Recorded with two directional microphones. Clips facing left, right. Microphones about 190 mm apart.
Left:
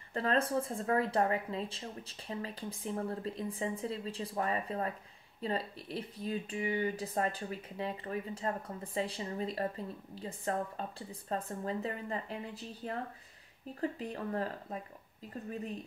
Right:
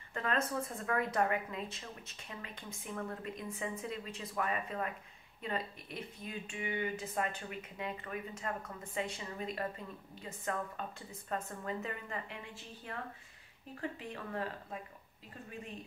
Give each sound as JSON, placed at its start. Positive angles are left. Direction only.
{"t": 0.1, "sound": "speech", "side_deg": 35}